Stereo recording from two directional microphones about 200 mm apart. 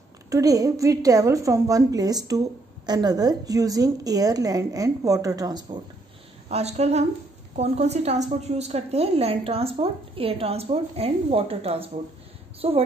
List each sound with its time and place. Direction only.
0.3 s a woman's voice: 15° right (ahead or behind)
6.5 s a woman's voice: 35° right (ahead or behind)